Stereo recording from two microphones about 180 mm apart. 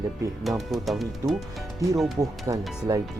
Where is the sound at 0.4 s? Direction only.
Centre (ahead or behind).